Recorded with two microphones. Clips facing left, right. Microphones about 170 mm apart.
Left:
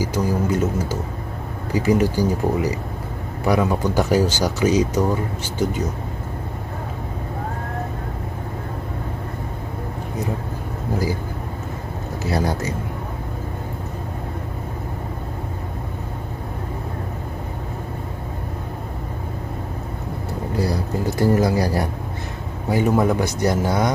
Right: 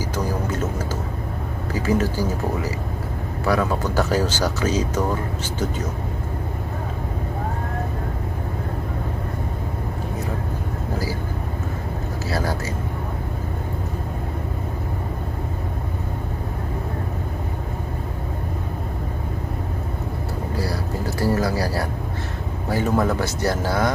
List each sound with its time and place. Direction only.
0.0 s speech: 10° left (ahead or behind)
12.3 s speech: 20° left (ahead or behind)
20.5 s a sound: 20° left (ahead or behind)
22.7 s speech: 15° left (ahead or behind)